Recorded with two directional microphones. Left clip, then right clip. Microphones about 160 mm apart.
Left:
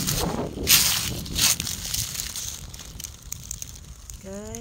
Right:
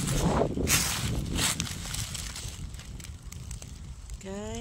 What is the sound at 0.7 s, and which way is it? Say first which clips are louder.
Crushing: left 8 dB; 70° left (ahead or behind).